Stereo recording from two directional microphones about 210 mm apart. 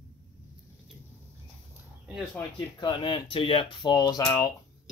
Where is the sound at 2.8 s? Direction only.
25° left (ahead or behind).